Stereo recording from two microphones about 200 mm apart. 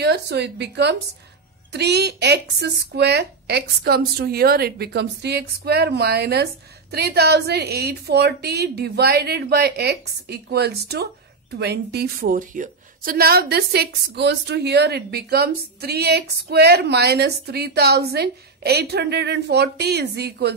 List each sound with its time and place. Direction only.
0.0 s speech: 55° right (ahead or behind)